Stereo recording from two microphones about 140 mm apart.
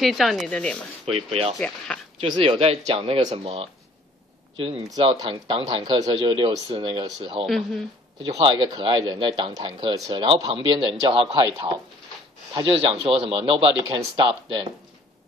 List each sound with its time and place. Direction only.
0.0 s speech: centre (ahead or behind)
1.1 s speech: 45° right (ahead or behind)
1.9 s speech: 10° left (ahead or behind)
2.2 s speech: 40° right (ahead or behind)
7.4 s speech: centre (ahead or behind)
8.2 s speech: 30° right (ahead or behind)
12.5 s speech: 45° right (ahead or behind)